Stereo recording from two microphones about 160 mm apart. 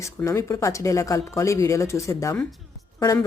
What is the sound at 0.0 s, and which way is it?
Speech, 20° left (ahead or behind).